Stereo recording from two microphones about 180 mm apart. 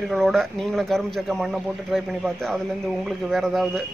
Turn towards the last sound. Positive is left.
turn(degrees=0)  # may be behind; listen again after turning